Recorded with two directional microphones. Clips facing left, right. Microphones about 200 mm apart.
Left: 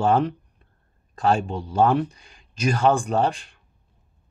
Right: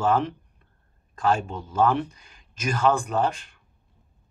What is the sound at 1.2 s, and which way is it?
Speech, 30° left (ahead or behind).